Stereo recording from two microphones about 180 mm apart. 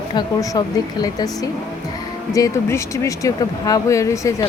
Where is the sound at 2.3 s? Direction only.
20° left (ahead or behind).